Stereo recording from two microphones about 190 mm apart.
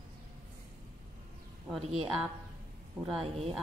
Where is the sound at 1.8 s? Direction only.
35° right (ahead or behind).